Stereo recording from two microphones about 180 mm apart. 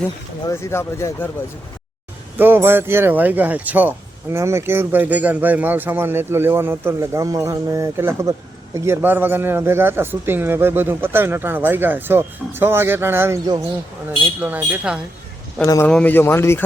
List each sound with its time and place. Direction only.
0.4 s speech: 15° left (ahead or behind)
2.4 s speech: 10° right (ahead or behind)
15.6 s speech: 15° left (ahead or behind)